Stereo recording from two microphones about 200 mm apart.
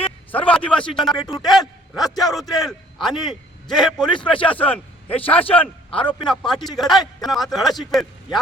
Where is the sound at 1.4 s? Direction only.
Centre (ahead or behind).